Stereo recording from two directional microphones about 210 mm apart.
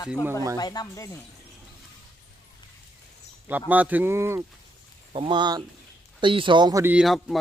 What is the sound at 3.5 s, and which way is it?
Speech, 10° right (ahead or behind).